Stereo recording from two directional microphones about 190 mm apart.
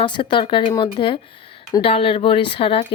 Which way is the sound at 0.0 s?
25° left (ahead or behind).